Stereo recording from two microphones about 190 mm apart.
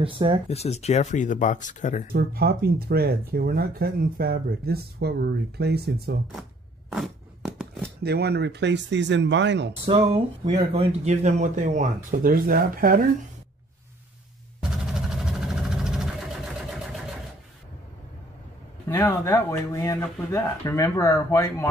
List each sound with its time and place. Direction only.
0.5 s speech: 35° left (ahead or behind)
2.1 s speech: 55° right (ahead or behind)
6.9 s a sound: centre (ahead or behind)
8.0 s speech: 60° right (ahead or behind)
9.8 s speech: 30° right (ahead or behind); by 13.0 s 50° right (ahead or behind)
14.6 s vehicle: 5° right (ahead or behind)
18.9 s speech: 15° left (ahead or behind)